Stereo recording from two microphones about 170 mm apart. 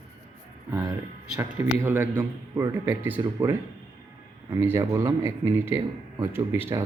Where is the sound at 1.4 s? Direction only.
15° right (ahead or behind).